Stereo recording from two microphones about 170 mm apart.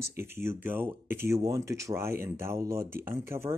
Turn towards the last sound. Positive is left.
turn(degrees=-15)  # may be behind; listen again after turning